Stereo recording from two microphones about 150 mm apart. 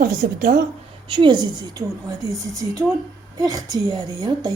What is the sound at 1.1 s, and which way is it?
A woman's voice, 30° right (ahead or behind).